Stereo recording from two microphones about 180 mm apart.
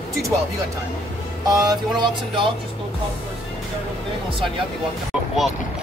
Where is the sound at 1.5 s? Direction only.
20° right (ahead or behind).